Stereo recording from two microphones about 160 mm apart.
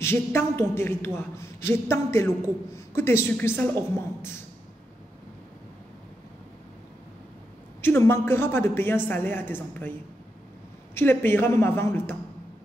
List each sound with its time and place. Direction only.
0.0 s a man's voice: 15° left (ahead or behind)
7.8 s a man's voice: 15° left (ahead or behind)
11.0 s a man's voice: 15° left (ahead or behind)